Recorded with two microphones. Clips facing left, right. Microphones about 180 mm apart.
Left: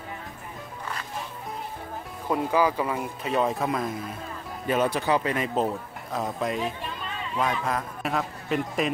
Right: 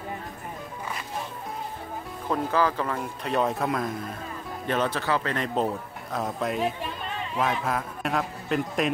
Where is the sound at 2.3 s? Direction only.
10° left (ahead or behind).